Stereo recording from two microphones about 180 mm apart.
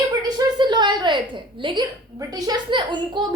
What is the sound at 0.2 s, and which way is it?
A woman's voice, 25° right (ahead or behind).